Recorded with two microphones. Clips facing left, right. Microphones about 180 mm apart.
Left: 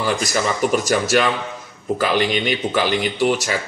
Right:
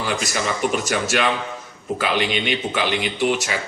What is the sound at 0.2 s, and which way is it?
Speech, 40° left (ahead or behind).